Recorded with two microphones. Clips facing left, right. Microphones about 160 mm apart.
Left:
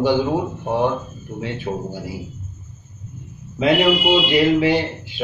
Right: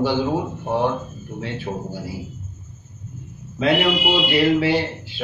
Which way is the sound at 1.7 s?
Centre (ahead or behind).